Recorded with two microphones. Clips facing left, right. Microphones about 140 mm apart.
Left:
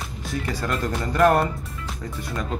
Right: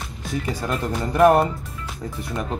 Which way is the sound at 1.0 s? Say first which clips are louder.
Right 3 dB; 20° right (ahead or behind).